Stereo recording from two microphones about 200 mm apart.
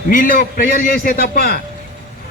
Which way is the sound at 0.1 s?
45° left (ahead or behind).